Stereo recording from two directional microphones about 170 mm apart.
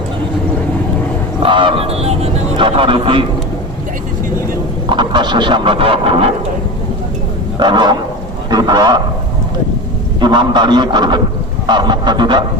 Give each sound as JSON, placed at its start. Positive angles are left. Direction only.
{"t": 1.4, "sound": "speech", "side_deg": -30}
{"t": 4.9, "sound": "speech", "side_deg": -25}
{"t": 7.6, "sound": "speech", "side_deg": -25}
{"t": 10.2, "sound": "speech", "side_deg": -25}